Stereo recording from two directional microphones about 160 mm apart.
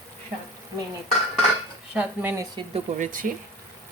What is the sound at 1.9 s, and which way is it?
Speech, 10° right (ahead or behind).